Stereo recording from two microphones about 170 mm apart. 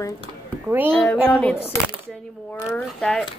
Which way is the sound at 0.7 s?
10° right (ahead or behind).